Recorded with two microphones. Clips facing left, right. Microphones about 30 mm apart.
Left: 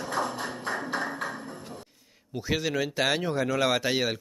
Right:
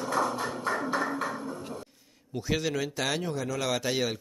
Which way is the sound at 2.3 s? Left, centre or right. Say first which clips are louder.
Left 1 dB; centre.